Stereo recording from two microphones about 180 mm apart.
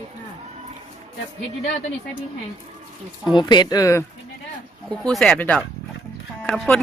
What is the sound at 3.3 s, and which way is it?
Speech, 25° left (ahead or behind).